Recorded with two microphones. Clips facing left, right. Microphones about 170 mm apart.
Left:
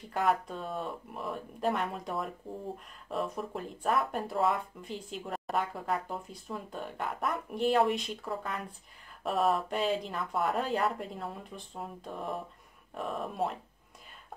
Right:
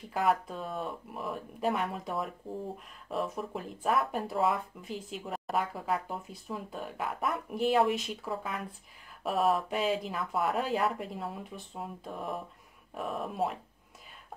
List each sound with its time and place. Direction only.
0.1 s speech: centre (ahead or behind)